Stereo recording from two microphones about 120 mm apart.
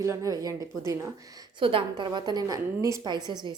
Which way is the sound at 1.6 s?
45° right (ahead or behind).